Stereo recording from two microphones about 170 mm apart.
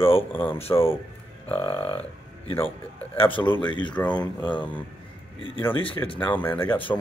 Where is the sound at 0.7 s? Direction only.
15° left (ahead or behind).